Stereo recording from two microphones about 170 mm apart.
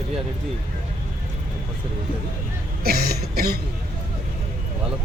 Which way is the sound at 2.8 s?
65° right (ahead or behind).